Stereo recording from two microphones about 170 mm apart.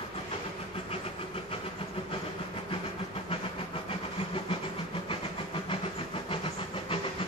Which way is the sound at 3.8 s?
30° left (ahead or behind).